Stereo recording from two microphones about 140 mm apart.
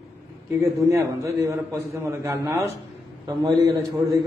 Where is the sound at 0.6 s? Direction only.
20° right (ahead or behind).